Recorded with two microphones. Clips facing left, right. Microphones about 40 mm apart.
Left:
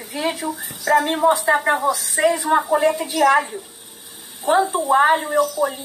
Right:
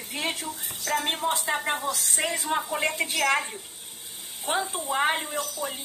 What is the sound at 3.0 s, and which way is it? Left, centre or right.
Speech, right.